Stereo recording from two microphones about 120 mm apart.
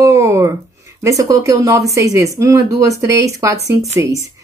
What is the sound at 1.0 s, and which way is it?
A woman's voice, 30° right (ahead or behind).